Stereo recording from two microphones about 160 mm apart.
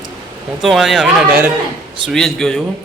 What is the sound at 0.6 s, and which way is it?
Speech, centre (ahead or behind).